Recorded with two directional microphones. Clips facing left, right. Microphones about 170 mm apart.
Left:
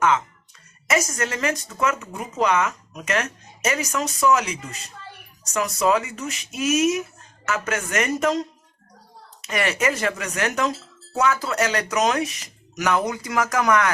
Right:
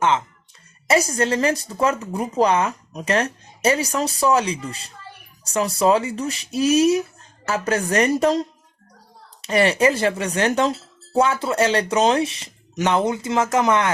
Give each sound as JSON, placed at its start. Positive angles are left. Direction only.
{"t": 0.9, "sound": "speech", "side_deg": -30}